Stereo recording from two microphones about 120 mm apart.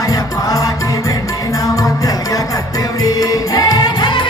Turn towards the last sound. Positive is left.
turn(degrees=40)  # may be behind; listen again after turning